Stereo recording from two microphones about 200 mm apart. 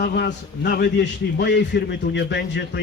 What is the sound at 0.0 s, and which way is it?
A man's voice, 55° left (ahead or behind).